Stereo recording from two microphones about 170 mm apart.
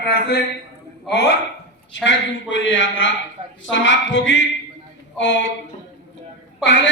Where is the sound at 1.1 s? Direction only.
85° left.